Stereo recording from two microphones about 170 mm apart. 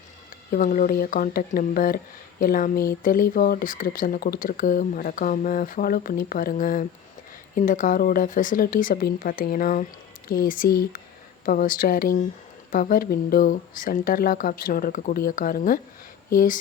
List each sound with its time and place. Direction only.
0.5 s speech: 55° left (ahead or behind)